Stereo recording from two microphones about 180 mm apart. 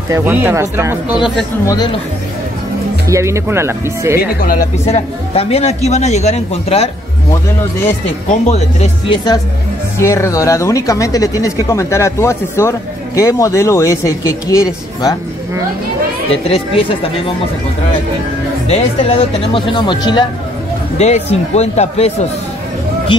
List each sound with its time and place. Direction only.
0.1 s speech: 10° right (ahead or behind)
3.1 s speech: 15° right (ahead or behind)
4.2 s speech: 50° left (ahead or behind)
4.8 s a man's voice: 35° left (ahead or behind)
8.3 s a man's voice: 35° left (ahead or behind)
9.9 s speech: 15° left (ahead or behind)
16.4 s a man's voice: 35° left (ahead or behind)
18.7 s speech: 35° left (ahead or behind)
21.0 s a man's voice: 35° left (ahead or behind)